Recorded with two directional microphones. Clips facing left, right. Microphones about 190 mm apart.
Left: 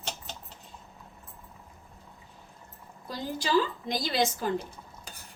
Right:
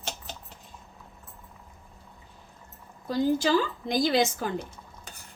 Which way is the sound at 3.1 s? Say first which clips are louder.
Right 9 dB; 50° right (ahead or behind).